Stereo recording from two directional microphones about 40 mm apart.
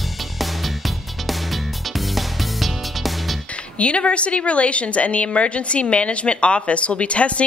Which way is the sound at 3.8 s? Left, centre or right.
Left.